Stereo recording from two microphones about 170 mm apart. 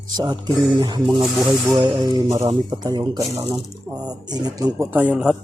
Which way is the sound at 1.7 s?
20° right (ahead or behind).